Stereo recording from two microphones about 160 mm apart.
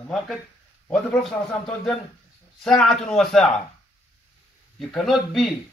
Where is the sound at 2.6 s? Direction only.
5° left (ahead or behind).